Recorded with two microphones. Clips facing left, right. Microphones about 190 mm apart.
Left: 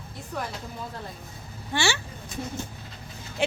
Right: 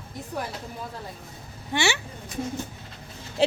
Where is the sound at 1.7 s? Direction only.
20° right (ahead or behind).